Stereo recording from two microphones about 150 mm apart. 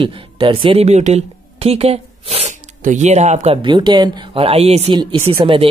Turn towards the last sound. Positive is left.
turn(degrees=-35)  # may be behind; listen again after turning